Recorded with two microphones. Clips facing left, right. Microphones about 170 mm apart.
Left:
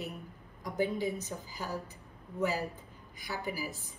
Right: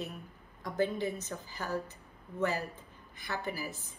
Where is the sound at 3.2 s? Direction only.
10° left (ahead or behind).